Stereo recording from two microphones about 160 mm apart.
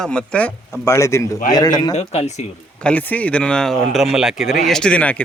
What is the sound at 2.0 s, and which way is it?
Speech, 45° left (ahead or behind).